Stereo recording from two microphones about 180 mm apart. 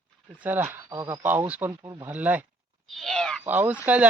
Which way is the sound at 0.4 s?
10° right (ahead or behind).